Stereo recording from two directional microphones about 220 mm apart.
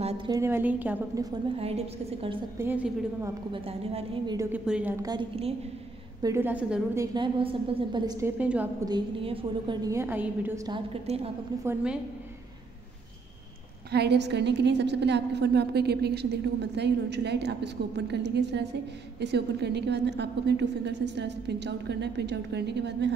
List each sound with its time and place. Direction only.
0.3 s a woman's voice: 10° right (ahead or behind); by 2.3 s 25° right (ahead or behind)
2.6 s a woman's voice: 10° right (ahead or behind)
3.5 s a woman's voice: 25° right (ahead or behind)
4.4 s a woman's voice: 5° right (ahead or behind)
5.0 s a woman's voice: 25° right (ahead or behind)
6.2 s a woman's voice: 10° right (ahead or behind)
7.2 s a woman's voice: 20° right (ahead or behind)
8.4 s a woman's voice: 5° right (ahead or behind)
8.8 s a woman's voice: 20° right (ahead or behind)
11.6 s a woman's voice: 5° right (ahead or behind)
13.9 s a woman's voice: 50° right (ahead or behind)